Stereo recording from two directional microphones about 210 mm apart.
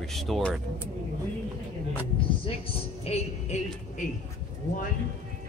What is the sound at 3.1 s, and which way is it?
Music, 30° left (ahead or behind).